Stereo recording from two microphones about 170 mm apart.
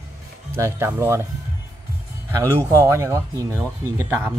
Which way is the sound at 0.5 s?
15° right (ahead or behind).